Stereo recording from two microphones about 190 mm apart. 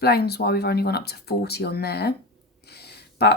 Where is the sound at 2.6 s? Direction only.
60° left (ahead or behind).